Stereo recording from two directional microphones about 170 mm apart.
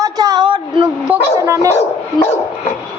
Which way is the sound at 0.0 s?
20° right (ahead or behind).